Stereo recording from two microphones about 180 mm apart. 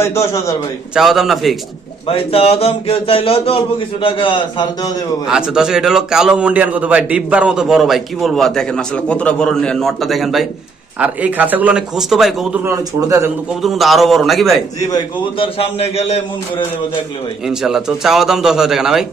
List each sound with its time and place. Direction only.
0.0 s a man's voice: 15° left (ahead or behind)
0.9 s a man's voice: centre (ahead or behind)
2.0 s a man's voice: 30° left (ahead or behind)
5.3 s a man's voice: 5° right (ahead or behind)
12.6 s a man's voice: 15° right (ahead or behind)
13.6 s a man's voice: centre (ahead or behind)
14.9 s a man's voice: 30° left (ahead or behind)
17.5 s a man's voice: 5° right (ahead or behind)